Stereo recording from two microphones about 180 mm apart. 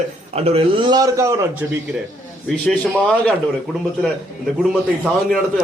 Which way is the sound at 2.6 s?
5° left (ahead or behind).